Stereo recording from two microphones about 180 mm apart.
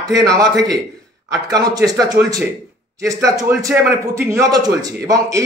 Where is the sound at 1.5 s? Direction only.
20° right (ahead or behind).